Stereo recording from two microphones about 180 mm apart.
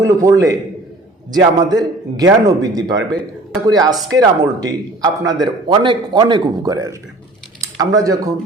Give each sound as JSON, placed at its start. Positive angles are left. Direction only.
{"t": 0.0, "sound": "a man's voice", "side_deg": -20}